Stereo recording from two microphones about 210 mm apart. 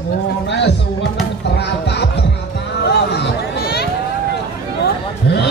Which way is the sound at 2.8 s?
50° left (ahead or behind).